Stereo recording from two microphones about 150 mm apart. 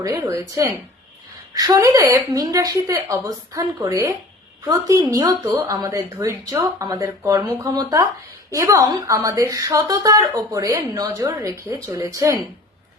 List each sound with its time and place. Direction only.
0.0 s a woman's voice: 20° right (ahead or behind)